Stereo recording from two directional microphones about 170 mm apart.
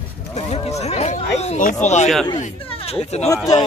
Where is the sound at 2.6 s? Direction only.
35° left (ahead or behind).